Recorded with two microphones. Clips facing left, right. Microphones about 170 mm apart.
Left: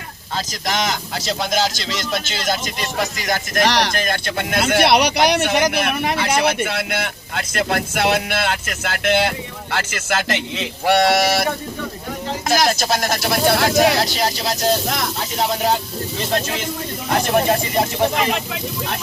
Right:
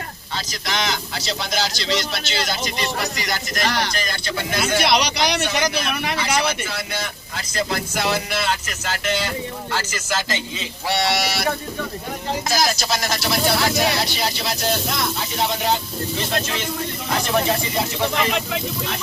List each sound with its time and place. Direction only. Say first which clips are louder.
0.3 s speech: left 4 dB; 45° left (ahead or behind)
3.7 s speech: left 3 dB; 80° left
3.9 s speech: left 4 dB; 55° left (ahead or behind)
12.5 s speech: left 5 dB; 55° left (ahead or behind); by 14.7 s 40° left (ahead or behind)
17.1 s speech: left 4 dB; 50° left (ahead or behind)